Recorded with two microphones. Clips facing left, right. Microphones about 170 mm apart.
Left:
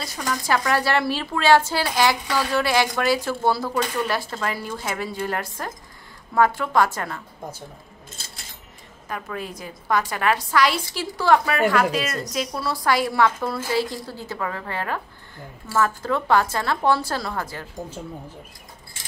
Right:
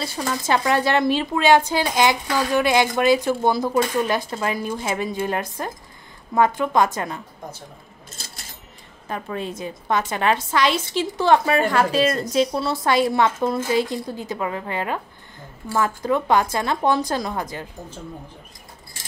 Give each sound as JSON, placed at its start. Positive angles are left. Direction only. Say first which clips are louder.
{"t": 0.0, "sound": "speech", "louder": "right 2 dB", "side_deg": -30}
{"t": 9.1, "sound": "speech", "louder": "right 3 dB", "side_deg": -25}